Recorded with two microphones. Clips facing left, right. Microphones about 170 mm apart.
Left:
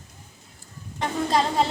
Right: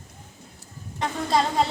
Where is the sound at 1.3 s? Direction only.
Centre (ahead or behind).